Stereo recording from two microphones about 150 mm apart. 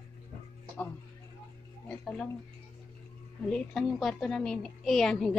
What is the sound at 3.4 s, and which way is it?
A woman's voice, 5° left (ahead or behind).